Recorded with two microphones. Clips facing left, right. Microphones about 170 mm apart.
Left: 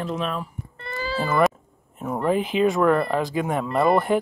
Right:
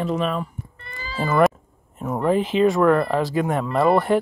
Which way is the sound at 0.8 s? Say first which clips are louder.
Left 12 dB; 40° left (ahead or behind).